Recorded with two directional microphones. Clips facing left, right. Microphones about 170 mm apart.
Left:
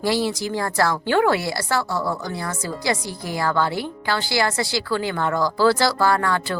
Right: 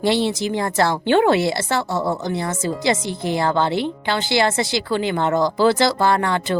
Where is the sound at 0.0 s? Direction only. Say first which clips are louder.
Right 3 dB; 25° right (ahead or behind).